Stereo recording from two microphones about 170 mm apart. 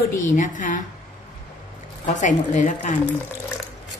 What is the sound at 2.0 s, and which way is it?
Speech, 45° left (ahead or behind).